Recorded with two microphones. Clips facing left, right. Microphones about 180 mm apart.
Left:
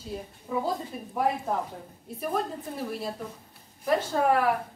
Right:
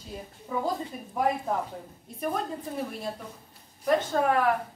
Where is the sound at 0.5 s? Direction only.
5° left (ahead or behind).